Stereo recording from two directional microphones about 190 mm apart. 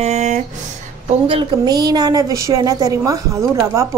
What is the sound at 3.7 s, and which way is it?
Music, 15° right (ahead or behind).